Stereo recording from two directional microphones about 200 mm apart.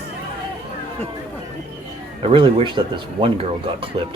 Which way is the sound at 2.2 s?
25° right (ahead or behind).